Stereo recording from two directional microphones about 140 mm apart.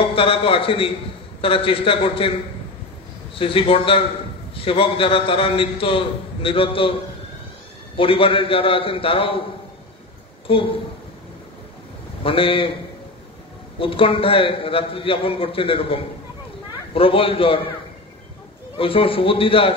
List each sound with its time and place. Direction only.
0.0 s a man's voice: 40° left (ahead or behind)
3.3 s a man's voice: 40° left (ahead or behind)
10.4 s a woman's voice: 40° left (ahead or behind)
12.2 s a man's voice: 40° left (ahead or behind)
13.7 s a man's voice: 40° left (ahead or behind)
18.8 s a man's voice: 40° left (ahead or behind)